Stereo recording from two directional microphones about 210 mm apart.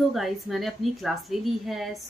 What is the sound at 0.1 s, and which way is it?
A woman's voice, centre (ahead or behind).